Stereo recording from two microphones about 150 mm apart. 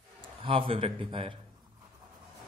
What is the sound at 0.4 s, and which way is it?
A man's voice, 35° right (ahead or behind).